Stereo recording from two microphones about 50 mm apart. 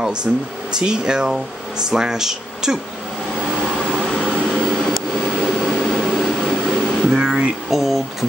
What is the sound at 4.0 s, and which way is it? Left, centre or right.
Vehicle, centre.